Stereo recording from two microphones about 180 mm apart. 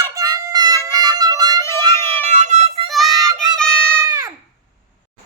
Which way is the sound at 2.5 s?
40° right (ahead or behind).